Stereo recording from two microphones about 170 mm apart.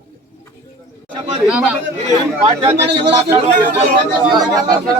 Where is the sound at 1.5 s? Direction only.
5° right (ahead or behind).